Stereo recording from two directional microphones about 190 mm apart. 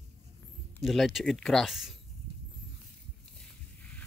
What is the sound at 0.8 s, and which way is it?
Speech, centre (ahead or behind).